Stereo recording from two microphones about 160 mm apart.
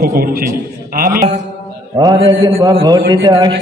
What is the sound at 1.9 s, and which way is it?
Mantra, 30° right (ahead or behind).